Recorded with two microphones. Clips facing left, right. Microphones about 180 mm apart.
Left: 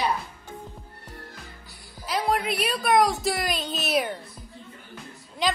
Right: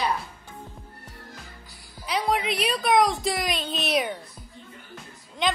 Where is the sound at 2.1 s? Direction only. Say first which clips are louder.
Even; centre (ahead or behind).